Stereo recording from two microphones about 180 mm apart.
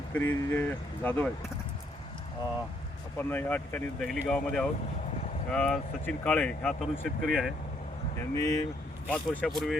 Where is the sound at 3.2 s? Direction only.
10° left (ahead or behind).